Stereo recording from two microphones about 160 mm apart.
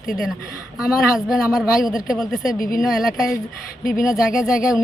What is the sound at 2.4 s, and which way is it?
Speech, 60° left (ahead or behind).